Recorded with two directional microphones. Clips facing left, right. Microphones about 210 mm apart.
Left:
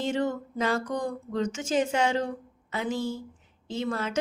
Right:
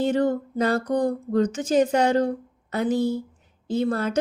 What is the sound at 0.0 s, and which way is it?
A woman's voice, 35° right (ahead or behind).